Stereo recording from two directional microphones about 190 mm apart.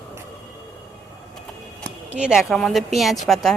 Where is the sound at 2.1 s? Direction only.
5° right (ahead or behind).